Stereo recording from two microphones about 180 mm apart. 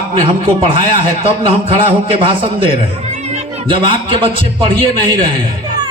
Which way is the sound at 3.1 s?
35° right (ahead or behind).